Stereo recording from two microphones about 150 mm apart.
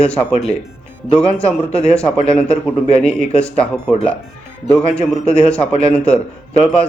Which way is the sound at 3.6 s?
5° left (ahead or behind).